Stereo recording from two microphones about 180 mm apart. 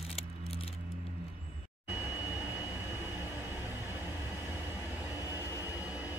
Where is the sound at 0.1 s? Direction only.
35° left (ahead or behind).